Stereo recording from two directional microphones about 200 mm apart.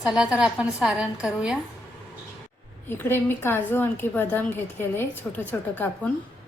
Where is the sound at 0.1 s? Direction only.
5° right (ahead or behind).